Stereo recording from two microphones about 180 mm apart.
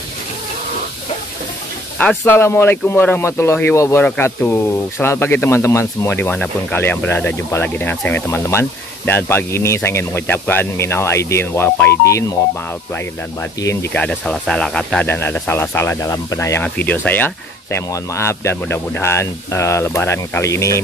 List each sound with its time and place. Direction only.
2.0 s speech: 10° left (ahead or behind)
13.6 s speech: 15° left (ahead or behind)
13.9 s speech: 5° left (ahead or behind)